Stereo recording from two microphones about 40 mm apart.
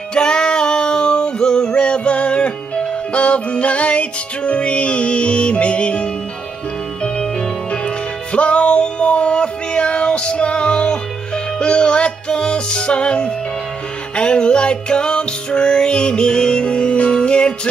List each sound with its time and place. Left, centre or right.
0.1 s music: left
8.3 s music: left